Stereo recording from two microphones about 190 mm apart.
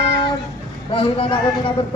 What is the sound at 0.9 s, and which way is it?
Speech, 25° left (ahead or behind).